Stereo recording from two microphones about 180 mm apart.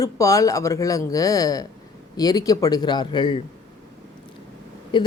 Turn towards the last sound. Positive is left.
turn(degrees=25)  # may be behind; listen again after turning